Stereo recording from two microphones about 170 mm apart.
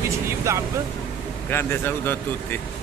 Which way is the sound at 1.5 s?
15° left (ahead or behind).